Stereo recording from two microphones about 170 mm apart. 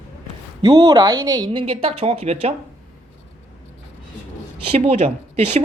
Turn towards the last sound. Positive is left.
turn(degrees=-40)  # may be behind; listen again after turning